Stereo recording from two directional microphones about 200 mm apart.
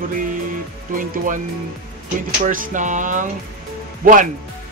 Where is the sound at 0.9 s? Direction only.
40° right (ahead or behind).